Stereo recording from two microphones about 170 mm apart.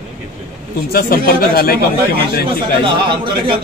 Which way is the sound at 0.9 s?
60° left (ahead or behind).